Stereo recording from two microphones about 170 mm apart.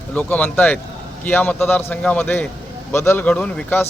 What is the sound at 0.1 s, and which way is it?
A man's voice, 10° left (ahead or behind).